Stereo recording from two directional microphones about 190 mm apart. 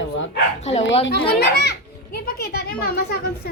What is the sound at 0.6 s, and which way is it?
Speech, 35° left (ahead or behind).